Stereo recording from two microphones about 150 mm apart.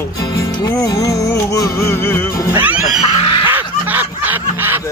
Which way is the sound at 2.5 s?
10° right (ahead or behind).